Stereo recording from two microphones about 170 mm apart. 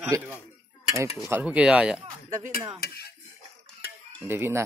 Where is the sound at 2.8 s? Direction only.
70° left (ahead or behind).